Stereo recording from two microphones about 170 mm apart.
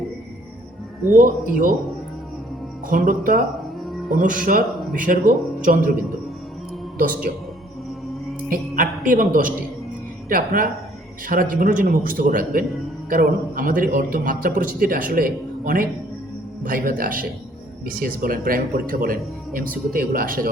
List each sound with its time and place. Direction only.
1.1 s a man's voice: 55° right (ahead or behind)
2.8 s a man's voice: 55° right (ahead or behind)
7.0 s a man's voice: 55° right (ahead or behind)
8.4 s a man's voice: 55° right (ahead or behind)